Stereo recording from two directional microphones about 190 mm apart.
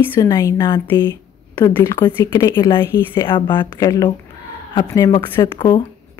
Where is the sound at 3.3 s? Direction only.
25° left (ahead or behind).